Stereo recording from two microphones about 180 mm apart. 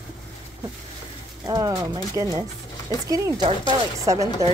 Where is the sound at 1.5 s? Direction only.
20° right (ahead or behind).